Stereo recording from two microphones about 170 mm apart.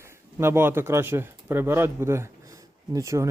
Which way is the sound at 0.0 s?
15° right (ahead or behind).